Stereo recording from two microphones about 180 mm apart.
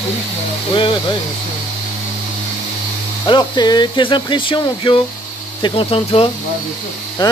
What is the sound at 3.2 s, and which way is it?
Speech, 25° left (ahead or behind).